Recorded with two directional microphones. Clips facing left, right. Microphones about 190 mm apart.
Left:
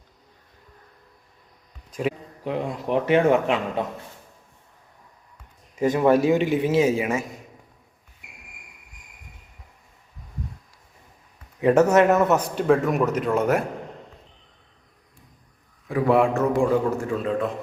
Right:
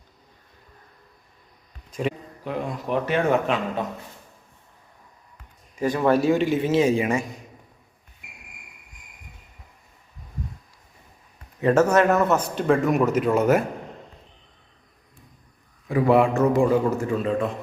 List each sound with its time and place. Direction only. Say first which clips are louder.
1.9 s a sound: left 1 dB; 5° left (ahead or behind)
2.4 s a man's voice: left 2 dB; 25° left (ahead or behind)
5.7 s speech: left 2 dB; 20° left (ahead or behind); by 7.3 s 5° left (ahead or behind)
11.6 s speech: left 1 dB; 15° left (ahead or behind)
12.6 s a man's voice: right 1 dB; centre (ahead or behind)
15.9 s a man's voice: right 1 dB; centre (ahead or behind)